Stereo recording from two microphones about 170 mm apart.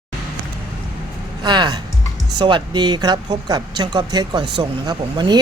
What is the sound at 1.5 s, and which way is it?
Speech, 25° right (ahead or behind).